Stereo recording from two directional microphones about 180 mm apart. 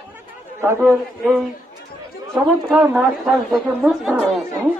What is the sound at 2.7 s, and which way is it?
Speech, 5° right (ahead or behind).